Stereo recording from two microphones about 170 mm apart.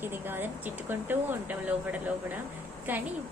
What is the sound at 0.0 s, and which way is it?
Speech, 10° right (ahead or behind).